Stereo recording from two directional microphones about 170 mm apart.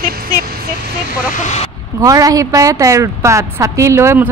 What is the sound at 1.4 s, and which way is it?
Speech, 40° left (ahead or behind).